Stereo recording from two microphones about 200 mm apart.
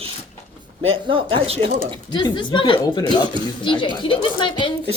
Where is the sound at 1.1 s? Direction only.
25° right (ahead or behind).